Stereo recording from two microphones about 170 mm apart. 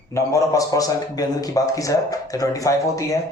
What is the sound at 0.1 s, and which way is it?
A man's voice, 20° left (ahead or behind).